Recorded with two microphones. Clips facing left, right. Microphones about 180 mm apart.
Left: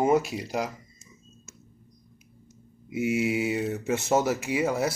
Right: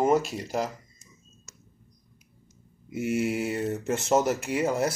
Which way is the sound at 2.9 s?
5° left (ahead or behind).